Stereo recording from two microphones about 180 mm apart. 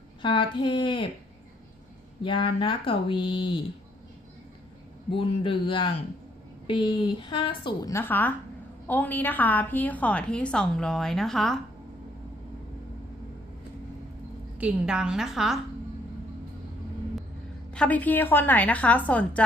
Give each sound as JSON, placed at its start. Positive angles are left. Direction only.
{"t": 0.2, "sound": "a woman's voice", "side_deg": 25}
{"t": 2.2, "sound": "a woman's voice", "side_deg": 25}
{"t": 5.1, "sound": "a woman's voice", "side_deg": 30}
{"t": 14.6, "sound": "a woman's voice", "side_deg": -5}
{"t": 17.7, "sound": "a woman's voice", "side_deg": 10}